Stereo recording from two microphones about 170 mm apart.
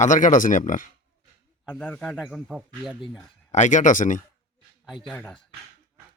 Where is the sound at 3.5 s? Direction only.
45° left (ahead or behind).